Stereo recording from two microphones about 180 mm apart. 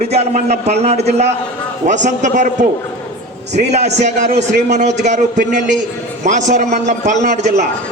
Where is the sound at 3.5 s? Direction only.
40° right (ahead or behind).